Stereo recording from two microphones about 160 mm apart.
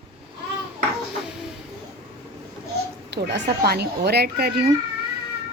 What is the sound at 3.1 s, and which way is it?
A woman's voice, 90° right.